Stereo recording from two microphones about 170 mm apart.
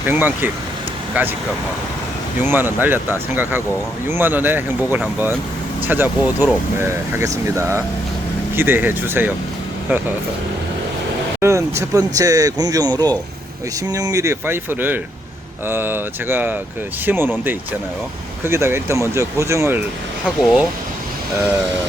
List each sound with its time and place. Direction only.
0.0 s speech: 10° right (ahead or behind)
2.4 s speech: 10° right (ahead or behind)
11.3 s speech: 15° right (ahead or behind)
18.4 s speech: 15° right (ahead or behind)
20.2 s speech: 5° right (ahead or behind)